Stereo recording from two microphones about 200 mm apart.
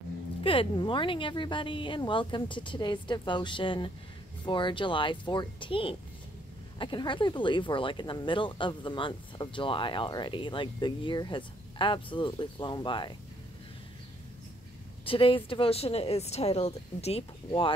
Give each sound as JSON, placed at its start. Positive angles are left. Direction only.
{"t": 0.4, "sound": "speech", "side_deg": 25}
{"t": 15.0, "sound": "speech", "side_deg": 25}